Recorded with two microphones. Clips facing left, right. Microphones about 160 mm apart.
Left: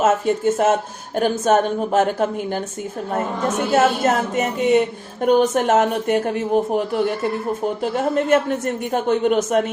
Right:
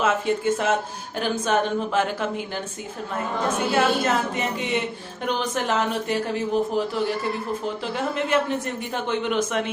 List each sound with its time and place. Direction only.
0.0 s a woman's voice: 45° left (ahead or behind)
3.7 s a woman's voice: 45° left (ahead or behind)